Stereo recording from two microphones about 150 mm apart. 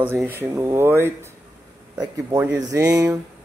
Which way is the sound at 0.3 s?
15° right (ahead or behind).